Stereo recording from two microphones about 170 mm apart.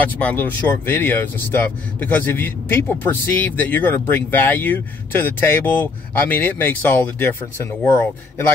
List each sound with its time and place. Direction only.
0.2 s speech: 10° left (ahead or behind)